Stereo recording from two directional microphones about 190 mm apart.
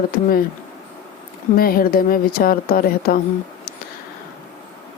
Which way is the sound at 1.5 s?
50° left (ahead or behind).